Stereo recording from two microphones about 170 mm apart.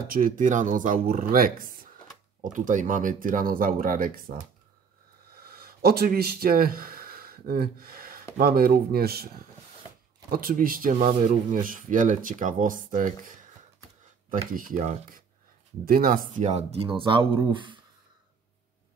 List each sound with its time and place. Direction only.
0.1 s speech: 50° right (ahead or behind)
5.3 s speech: 65° right (ahead or behind)
10.3 s speech: 55° right (ahead or behind)
14.5 s speech: 55° right (ahead or behind); by 17.7 s 30° right (ahead or behind)